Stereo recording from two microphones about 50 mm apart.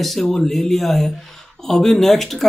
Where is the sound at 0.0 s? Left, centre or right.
Centre.